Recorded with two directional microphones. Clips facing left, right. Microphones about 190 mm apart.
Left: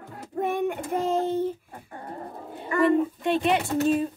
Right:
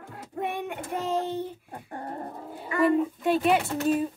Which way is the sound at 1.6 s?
40° right (ahead or behind).